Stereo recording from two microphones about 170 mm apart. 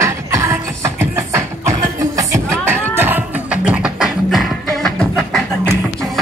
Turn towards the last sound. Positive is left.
turn(degrees=5)  # may be behind; listen again after turning